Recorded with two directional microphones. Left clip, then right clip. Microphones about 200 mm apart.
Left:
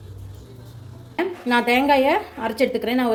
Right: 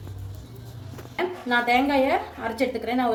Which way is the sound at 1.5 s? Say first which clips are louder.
Left 4 dB; 50° left (ahead or behind).